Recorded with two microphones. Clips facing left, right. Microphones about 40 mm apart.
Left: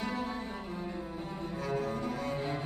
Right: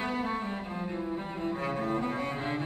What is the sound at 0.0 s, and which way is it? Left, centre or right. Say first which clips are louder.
Cello: right 4 dB; right.